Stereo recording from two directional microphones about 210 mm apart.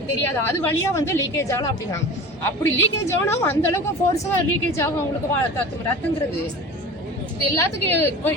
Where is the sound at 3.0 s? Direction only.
15° left (ahead or behind).